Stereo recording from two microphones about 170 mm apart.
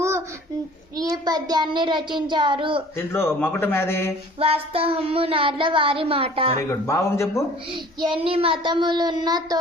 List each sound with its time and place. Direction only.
0.9 s child singing: 25° right (ahead or behind)
3.1 s speech: 15° left (ahead or behind)
4.4 s child singing: 35° right (ahead or behind)
6.6 s speech: 15° left (ahead or behind)
8.0 s child singing: 30° right (ahead or behind)